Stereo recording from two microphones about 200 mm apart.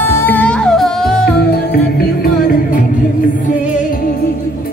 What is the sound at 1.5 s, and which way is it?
Music, 50° left (ahead or behind).